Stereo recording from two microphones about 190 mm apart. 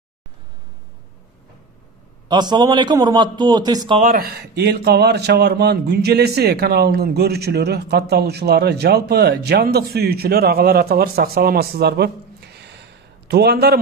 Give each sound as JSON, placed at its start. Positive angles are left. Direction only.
{"t": 2.2, "sound": "a man's voice", "side_deg": -20}
{"t": 4.0, "sound": "speech", "side_deg": -50}